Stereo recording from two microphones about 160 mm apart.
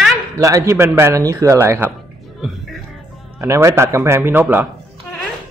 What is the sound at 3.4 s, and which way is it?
A man's voice, 15° right (ahead or behind).